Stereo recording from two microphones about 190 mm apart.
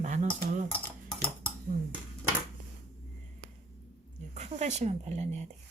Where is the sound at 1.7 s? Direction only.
50° right (ahead or behind).